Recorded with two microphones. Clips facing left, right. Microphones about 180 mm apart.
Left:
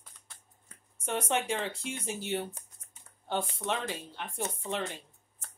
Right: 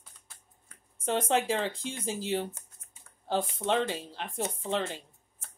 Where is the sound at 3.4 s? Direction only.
30° right (ahead or behind).